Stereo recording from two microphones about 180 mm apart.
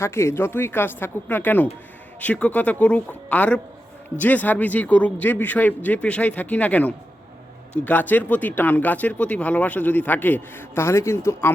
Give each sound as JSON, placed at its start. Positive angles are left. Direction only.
{"t": 0.0, "sound": "speech", "side_deg": 15}